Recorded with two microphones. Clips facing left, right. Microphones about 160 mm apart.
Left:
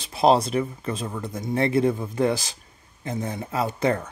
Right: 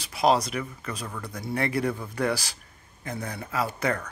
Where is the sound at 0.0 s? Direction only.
25° left (ahead or behind).